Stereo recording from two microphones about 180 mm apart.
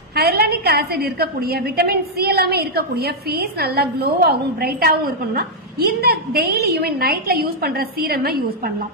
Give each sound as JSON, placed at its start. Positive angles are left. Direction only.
{"t": 0.1, "sound": "a woman's voice", "side_deg": -60}